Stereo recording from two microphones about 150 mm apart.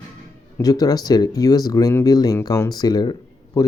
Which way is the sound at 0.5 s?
25° left (ahead or behind).